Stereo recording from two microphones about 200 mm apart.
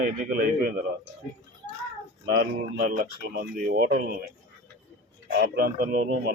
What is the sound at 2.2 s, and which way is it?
Speech, 55° right (ahead or behind).